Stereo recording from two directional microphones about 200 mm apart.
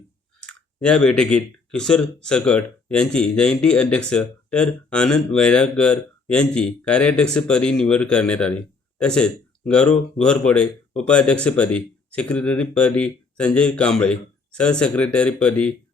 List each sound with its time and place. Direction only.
0.3 s speech: 5° left (ahead or behind)